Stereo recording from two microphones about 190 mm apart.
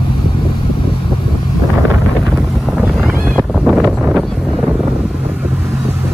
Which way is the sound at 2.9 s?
5° right (ahead or behind).